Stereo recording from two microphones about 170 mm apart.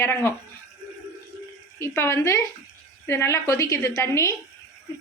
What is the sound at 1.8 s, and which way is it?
A woman's voice, 15° left (ahead or behind).